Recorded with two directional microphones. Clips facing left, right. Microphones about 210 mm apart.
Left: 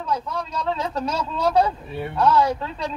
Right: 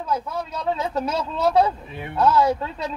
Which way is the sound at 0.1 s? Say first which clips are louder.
Even; 25° right (ahead or behind).